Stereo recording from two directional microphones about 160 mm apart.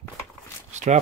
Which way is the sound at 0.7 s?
45° right (ahead or behind).